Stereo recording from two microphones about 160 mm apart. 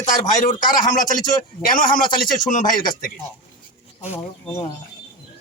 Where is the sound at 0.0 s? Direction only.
55° left (ahead or behind).